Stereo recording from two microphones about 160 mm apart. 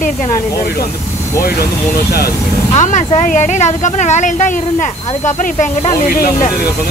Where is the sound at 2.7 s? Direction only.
50° left (ahead or behind).